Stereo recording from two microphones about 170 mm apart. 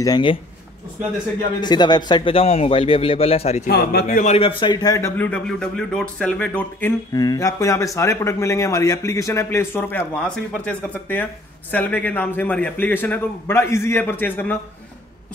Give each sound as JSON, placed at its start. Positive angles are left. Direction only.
{"t": 0.0, "sound": "speech", "side_deg": 25}
{"t": 1.6, "sound": "a man's voice", "side_deg": 25}
{"t": 3.6, "sound": "a man's voice", "side_deg": 65}
{"t": 4.2, "sound": "speech", "side_deg": 40}
{"t": 7.1, "sound": "speech", "side_deg": 20}